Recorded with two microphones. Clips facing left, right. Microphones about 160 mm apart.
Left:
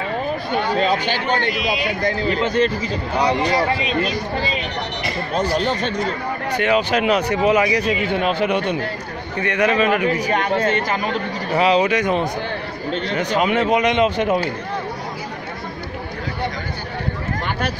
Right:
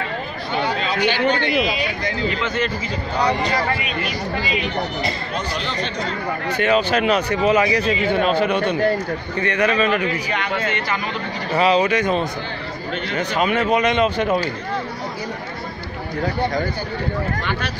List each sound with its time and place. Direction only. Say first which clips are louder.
0.5 s speech: left 3 dB; 45° left (ahead or behind)
3.2 s speech: left 2 dB; 15° left (ahead or behind)
3.7 s speech: left 4 dB; 30° left (ahead or behind)
5.5 s speech: left 5 dB; 45° left (ahead or behind)
6.6 s speech: even; 15° left (ahead or behind)
10.3 s speech: left 5 dB; 40° left (ahead or behind)
11.5 s speech: even; 15° left (ahead or behind)
17.4 s a sound: left 1 dB; 50° left (ahead or behind)